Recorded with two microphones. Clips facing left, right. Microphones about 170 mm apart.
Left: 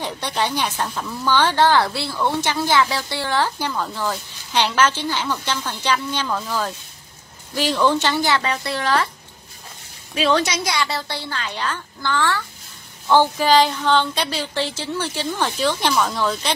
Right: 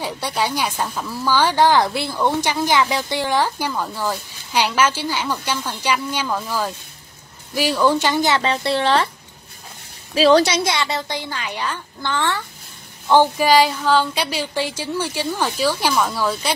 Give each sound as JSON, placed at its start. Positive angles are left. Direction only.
{"t": 0.0, "sound": "a woman's voice", "side_deg": -10}
{"t": 10.1, "sound": "a woman's voice", "side_deg": -35}